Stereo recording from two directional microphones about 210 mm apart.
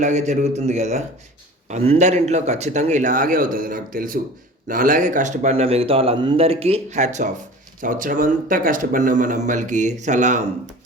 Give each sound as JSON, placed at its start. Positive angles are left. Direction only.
{"t": 0.0, "sound": "a man's voice", "side_deg": -35}